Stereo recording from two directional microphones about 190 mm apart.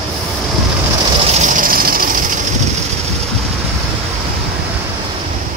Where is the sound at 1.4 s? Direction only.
45° right (ahead or behind).